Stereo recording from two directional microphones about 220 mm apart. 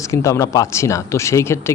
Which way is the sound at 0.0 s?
15° left (ahead or behind).